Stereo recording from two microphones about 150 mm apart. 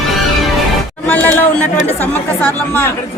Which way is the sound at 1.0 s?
10° left (ahead or behind).